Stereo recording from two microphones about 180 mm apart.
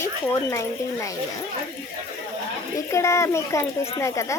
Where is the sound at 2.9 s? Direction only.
15° left (ahead or behind).